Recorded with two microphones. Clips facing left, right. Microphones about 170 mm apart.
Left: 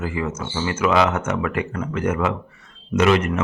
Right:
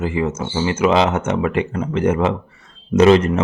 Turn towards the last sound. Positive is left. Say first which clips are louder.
# right 6 dB
turn(degrees=-30)  # may be behind; listen again after turning